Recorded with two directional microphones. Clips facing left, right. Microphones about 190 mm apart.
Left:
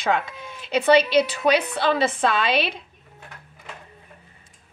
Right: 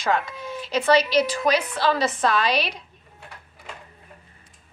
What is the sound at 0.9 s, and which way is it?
Speech, 60° left (ahead or behind).